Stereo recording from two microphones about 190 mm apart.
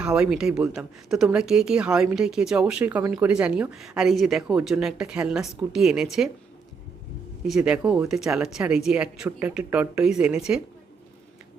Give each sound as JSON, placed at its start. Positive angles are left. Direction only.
{"t": 0.0, "sound": "a woman's voice", "side_deg": -5}
{"t": 7.4, "sound": "a woman's voice", "side_deg": -5}